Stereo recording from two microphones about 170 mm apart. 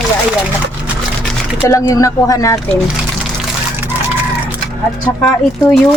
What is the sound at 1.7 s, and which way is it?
Speech, 20° left (ahead or behind).